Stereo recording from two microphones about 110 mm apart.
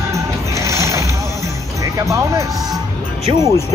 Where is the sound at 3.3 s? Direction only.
50° right (ahead or behind).